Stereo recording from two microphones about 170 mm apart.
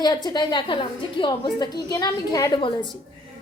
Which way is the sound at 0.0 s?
25° left (ahead or behind).